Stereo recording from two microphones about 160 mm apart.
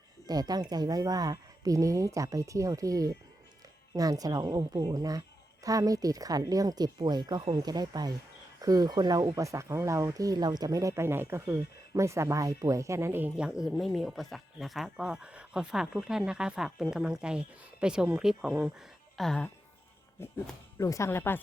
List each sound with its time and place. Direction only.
0.3 s speech: 25° right (ahead or behind); by 19.5 s 5° left (ahead or behind)
20.2 s speech: 15° left (ahead or behind)